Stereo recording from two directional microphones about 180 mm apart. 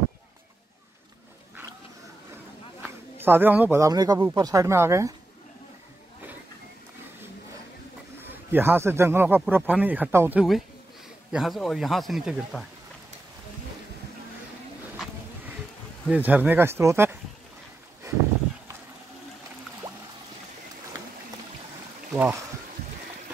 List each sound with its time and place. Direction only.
2.8 s speech: 10° right (ahead or behind)
8.3 s speech: 10° right (ahead or behind)
11.3 s speech: centre (ahead or behind)
16.1 s speech: 10° right (ahead or behind)
18.0 s a sound: 20° right (ahead or behind)
22.1 s speech: 15° right (ahead or behind)